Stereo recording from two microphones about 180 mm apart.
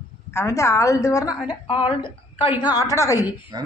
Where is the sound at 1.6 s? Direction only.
30° left (ahead or behind).